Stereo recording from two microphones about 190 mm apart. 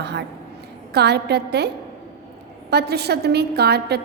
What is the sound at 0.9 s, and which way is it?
A woman's voice, 60° right (ahead or behind).